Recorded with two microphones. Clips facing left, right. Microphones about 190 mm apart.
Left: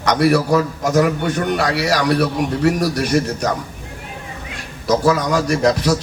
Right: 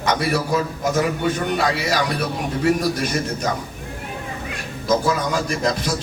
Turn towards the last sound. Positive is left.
turn(degrees=70)  # may be behind; listen again after turning